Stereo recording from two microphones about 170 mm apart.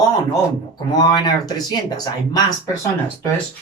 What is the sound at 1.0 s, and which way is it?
Speech, 25° left (ahead or behind).